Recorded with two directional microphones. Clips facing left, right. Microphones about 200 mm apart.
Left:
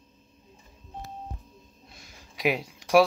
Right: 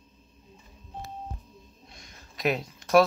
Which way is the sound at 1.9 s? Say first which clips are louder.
Left 1 dB; 10° left (ahead or behind).